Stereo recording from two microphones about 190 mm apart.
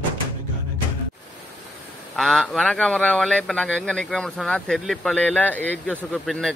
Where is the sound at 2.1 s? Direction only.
Centre (ahead or behind).